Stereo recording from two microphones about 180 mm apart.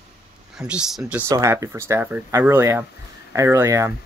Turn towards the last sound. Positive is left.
turn(degrees=-15)  # may be behind; listen again after turning